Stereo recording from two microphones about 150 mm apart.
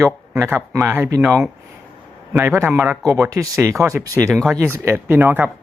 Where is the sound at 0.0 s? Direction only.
15° right (ahead or behind).